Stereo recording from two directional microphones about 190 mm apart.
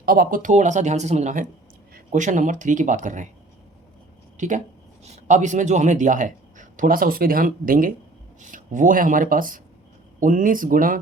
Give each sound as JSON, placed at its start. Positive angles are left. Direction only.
{"t": 0.0, "sound": "speech", "side_deg": -50}
{"t": 4.4, "sound": "a man's voice", "side_deg": -40}